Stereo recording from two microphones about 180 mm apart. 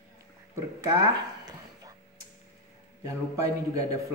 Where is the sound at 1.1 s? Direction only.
20° right (ahead or behind).